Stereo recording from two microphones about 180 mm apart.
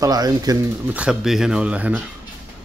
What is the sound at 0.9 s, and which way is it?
Speech, 5° right (ahead or behind).